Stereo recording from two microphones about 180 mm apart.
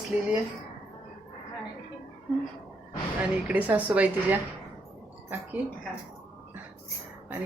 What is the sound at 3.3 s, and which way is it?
Speech, 5° right (ahead or behind).